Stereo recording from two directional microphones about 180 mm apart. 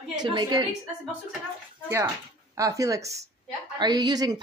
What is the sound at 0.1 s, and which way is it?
Speech, 25° right (ahead or behind).